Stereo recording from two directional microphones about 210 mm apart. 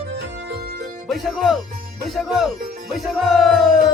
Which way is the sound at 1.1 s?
Centre (ahead or behind).